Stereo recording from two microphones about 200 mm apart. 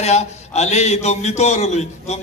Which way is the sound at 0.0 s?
35° left (ahead or behind).